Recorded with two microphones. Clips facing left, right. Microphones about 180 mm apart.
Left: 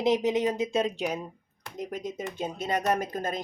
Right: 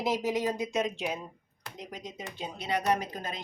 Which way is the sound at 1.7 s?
50° left (ahead or behind).